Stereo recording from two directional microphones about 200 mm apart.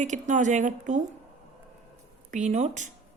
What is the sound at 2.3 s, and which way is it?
Speech, 35° right (ahead or behind).